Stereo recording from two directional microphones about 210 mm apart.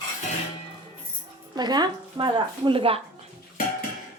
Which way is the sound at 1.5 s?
20° right (ahead or behind).